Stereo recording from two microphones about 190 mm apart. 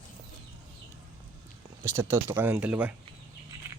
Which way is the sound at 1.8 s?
15° right (ahead or behind).